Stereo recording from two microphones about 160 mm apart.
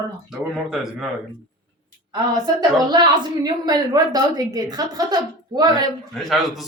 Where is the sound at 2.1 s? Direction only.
25° right (ahead or behind).